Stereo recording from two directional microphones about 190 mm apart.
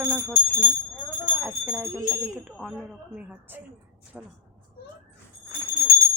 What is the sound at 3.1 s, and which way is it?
Speech, 10° right (ahead or behind).